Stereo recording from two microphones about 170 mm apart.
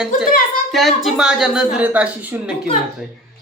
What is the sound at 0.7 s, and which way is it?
Speech, centre (ahead or behind).